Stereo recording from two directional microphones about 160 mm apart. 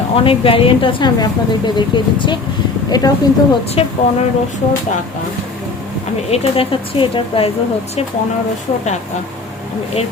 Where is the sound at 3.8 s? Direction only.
40° left (ahead or behind).